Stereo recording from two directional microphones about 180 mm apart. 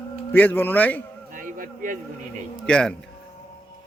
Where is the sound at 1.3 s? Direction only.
50° right (ahead or behind).